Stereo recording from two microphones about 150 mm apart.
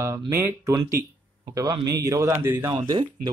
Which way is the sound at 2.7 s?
30° right (ahead or behind).